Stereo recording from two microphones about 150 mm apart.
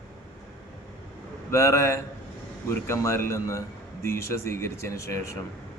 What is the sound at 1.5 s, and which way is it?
Speech, 20° left (ahead or behind).